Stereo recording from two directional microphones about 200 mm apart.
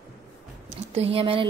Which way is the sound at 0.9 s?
30° right (ahead or behind).